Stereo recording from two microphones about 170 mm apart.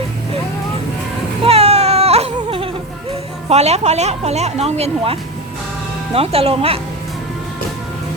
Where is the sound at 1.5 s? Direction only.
35° right (ahead or behind).